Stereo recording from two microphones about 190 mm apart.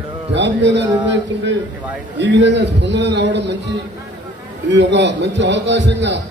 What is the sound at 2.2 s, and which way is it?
A man's voice, 65° right (ahead or behind).